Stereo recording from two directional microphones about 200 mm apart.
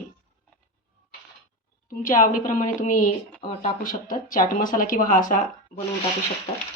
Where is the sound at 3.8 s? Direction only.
40° left (ahead or behind).